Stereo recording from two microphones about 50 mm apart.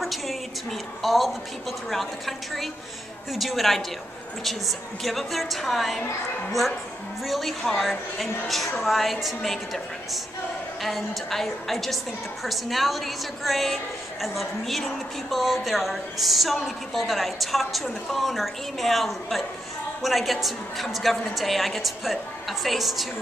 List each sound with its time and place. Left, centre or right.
0.0 s a woman's voice: centre
7.2 s a woman's voice: centre